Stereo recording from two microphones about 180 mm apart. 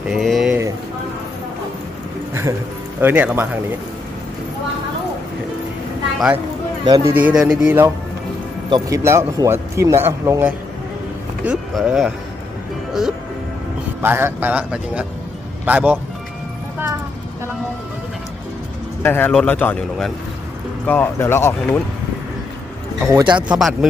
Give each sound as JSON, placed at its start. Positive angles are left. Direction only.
{"t": 0.1, "sound": "a sound", "side_deg": 0}
{"t": 3.0, "sound": "a man's voice", "side_deg": -10}
{"t": 6.1, "sound": "speech", "side_deg": -5}
{"t": 6.8, "sound": "a man's voice", "side_deg": -20}
{"t": 7.2, "sound": "a man's voice", "side_deg": -5}
{"t": 11.4, "sound": "a man's voice", "side_deg": 0}
{"t": 19.0, "sound": "a man's voice", "side_deg": 10}
{"t": 23.1, "sound": "a man's voice", "side_deg": -25}
{"t": 23.5, "sound": "speech", "side_deg": 0}